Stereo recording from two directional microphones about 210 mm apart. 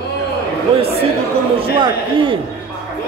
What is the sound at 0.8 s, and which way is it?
Speech, 30° right (ahead or behind).